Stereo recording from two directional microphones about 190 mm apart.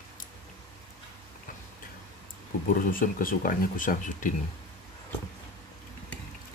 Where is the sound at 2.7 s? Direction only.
45° left (ahead or behind).